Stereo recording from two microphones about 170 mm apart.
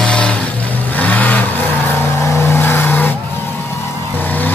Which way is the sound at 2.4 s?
15° left (ahead or behind).